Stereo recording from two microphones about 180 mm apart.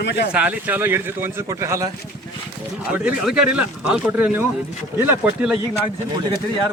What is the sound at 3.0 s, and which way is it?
Speech, 5° right (ahead or behind).